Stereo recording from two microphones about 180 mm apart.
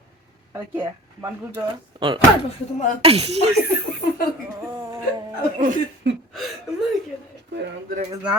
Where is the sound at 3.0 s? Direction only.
35° right (ahead or behind).